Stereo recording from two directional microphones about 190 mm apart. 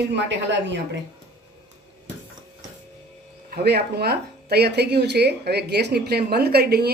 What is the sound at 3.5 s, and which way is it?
A woman's voice, 55° right (ahead or behind).